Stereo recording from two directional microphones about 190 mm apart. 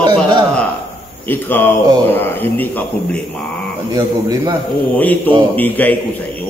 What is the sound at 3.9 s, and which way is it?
Speech, 20° right (ahead or behind).